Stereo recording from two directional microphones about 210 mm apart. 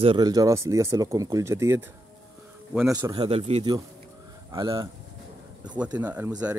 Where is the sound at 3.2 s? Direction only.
30° right (ahead or behind).